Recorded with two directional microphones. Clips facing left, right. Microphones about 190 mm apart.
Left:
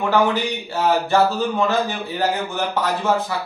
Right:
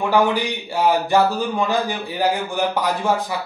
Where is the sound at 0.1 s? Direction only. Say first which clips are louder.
Even; 10° right (ahead or behind).